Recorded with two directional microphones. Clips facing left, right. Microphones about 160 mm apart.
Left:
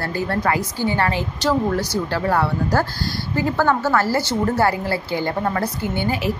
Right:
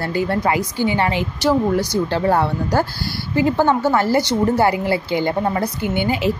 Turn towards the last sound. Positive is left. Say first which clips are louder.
# right 3 dB
turn(degrees=-20)  # may be behind; listen again after turning